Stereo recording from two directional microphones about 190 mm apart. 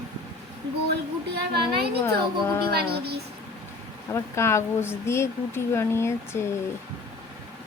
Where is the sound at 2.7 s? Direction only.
60° right (ahead or behind).